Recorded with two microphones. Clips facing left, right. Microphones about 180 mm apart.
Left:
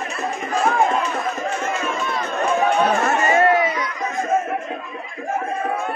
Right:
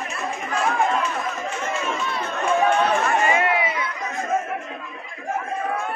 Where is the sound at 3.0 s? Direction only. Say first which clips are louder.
Left 4 dB; 40° left (ahead or behind).